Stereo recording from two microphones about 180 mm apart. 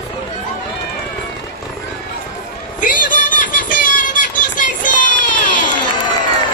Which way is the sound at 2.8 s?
50° left (ahead or behind).